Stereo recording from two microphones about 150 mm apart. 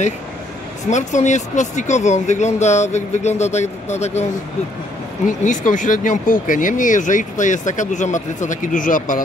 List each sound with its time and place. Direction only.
0.8 s speech: 55° left (ahead or behind)